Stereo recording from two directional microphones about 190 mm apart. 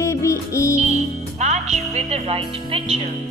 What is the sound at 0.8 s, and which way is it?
Music, 35° right (ahead or behind).